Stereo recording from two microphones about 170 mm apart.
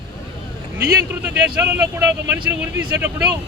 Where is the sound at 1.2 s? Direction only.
10° right (ahead or behind).